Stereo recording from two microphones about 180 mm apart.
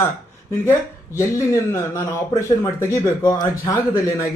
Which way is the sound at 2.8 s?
15° left (ahead or behind).